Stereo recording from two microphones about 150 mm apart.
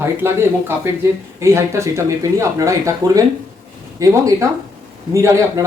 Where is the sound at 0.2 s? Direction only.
15° right (ahead or behind).